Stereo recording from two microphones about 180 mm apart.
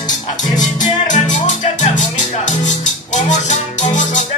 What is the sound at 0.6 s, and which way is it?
Music, 45° left (ahead or behind).